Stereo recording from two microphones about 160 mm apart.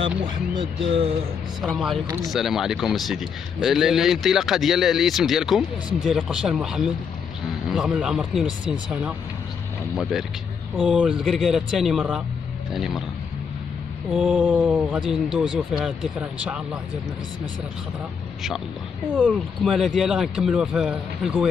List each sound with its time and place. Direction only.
0.2 s speech: 35° right (ahead or behind)
1.6 s a man's voice: centre (ahead or behind)
10.9 s a man's voice: 5° right (ahead or behind)
14.1 s a man's voice: 5° right (ahead or behind)
19.1 s a man's voice: 5° right (ahead or behind)